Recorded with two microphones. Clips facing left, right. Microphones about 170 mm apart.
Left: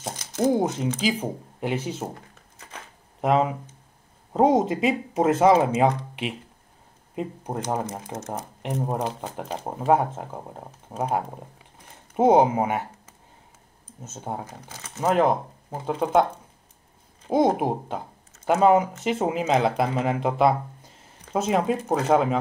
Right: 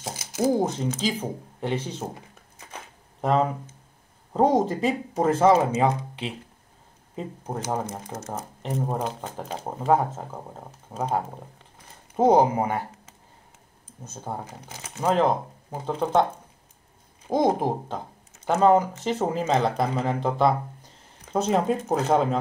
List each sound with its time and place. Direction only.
0.0 s speech: 10° right (ahead or behind)
1.6 s speech: 10° left (ahead or behind)
3.2 s speech: 10° left (ahead or behind)
5.1 s speech: 5° left (ahead or behind)
7.7 s speech: 5° left (ahead or behind)
9.7 s speech: 10° left (ahead or behind)
12.2 s speech: 20° left (ahead or behind)
14.0 s speech: 20° left (ahead or behind)
15.0 s speech: 10° left (ahead or behind)
17.3 s speech: 5° left (ahead or behind)